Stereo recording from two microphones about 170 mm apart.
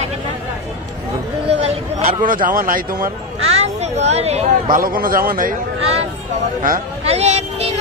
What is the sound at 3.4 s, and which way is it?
Speech, 40° right (ahead or behind).